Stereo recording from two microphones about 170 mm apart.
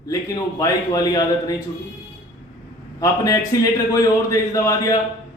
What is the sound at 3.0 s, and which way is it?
A man's voice, 20° left (ahead or behind).